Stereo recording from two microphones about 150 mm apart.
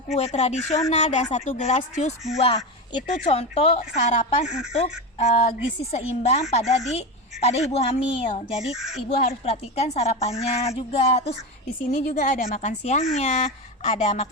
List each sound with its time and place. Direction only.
0.3 s a woman's voice: 45° left (ahead or behind)
2.4 s a woman's voice: 40° left (ahead or behind)
8.7 s speech: centre (ahead or behind)
9.0 s a woman's voice: 45° left (ahead or behind)